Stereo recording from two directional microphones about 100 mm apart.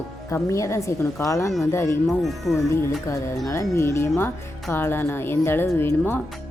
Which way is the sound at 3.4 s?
30° left (ahead or behind).